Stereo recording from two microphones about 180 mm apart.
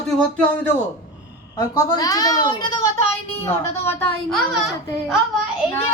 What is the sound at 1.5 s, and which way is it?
A woman's voice, 20° left (ahead or behind).